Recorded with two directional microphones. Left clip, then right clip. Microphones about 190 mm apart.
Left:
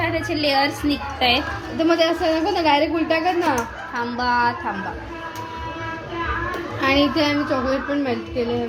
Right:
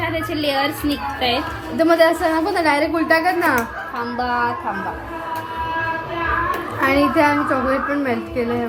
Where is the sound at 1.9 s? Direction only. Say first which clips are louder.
Right 3 dB; 10° right (ahead or behind).